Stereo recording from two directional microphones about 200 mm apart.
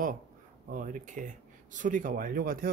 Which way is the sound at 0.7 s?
40° right (ahead or behind).